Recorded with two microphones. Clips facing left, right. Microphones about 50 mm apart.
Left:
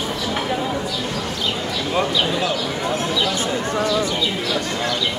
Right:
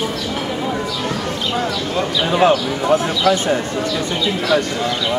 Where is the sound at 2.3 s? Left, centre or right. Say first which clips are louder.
Right 8 dB; right.